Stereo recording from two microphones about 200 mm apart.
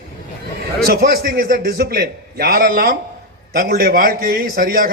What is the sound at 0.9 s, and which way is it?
A man's voice, 50° right (ahead or behind).